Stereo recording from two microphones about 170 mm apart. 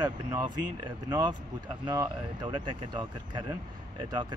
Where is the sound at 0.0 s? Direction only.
25° right (ahead or behind).